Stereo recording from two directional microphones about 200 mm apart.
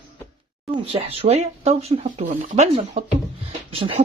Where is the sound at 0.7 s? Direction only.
30° right (ahead or behind).